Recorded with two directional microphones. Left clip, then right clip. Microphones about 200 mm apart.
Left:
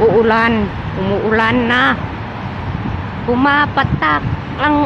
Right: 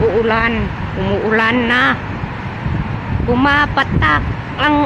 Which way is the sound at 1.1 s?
Centre (ahead or behind).